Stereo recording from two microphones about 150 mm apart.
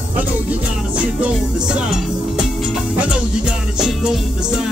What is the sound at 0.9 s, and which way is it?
Music, 10° right (ahead or behind).